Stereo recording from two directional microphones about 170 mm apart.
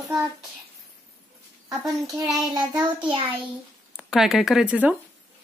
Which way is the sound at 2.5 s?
25° right (ahead or behind).